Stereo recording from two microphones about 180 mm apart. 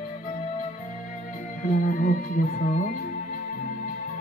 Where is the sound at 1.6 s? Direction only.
50° left (ahead or behind).